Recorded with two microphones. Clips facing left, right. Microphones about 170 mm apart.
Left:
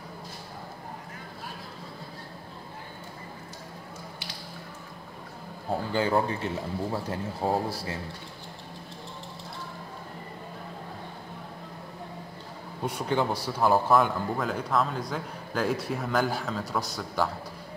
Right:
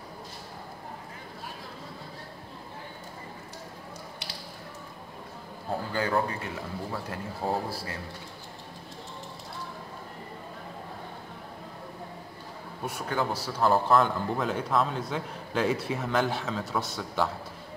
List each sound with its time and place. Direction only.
5.9 s speech: 25° left (ahead or behind)
12.8 s a man's voice: 20° left (ahead or behind); by 17.3 s centre (ahead or behind)